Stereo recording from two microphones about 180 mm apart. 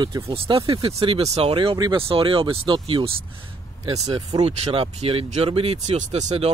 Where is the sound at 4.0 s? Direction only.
35° right (ahead or behind).